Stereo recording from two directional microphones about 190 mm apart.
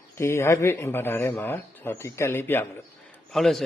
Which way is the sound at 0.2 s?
15° left (ahead or behind).